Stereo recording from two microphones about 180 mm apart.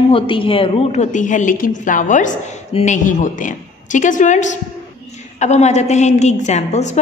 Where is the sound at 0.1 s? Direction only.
30° left (ahead or behind).